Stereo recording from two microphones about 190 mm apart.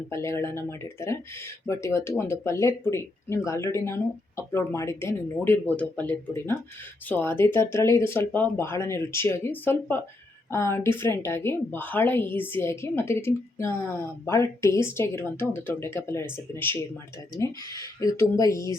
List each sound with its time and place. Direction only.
0.1 s a woman's voice: 15° left (ahead or behind)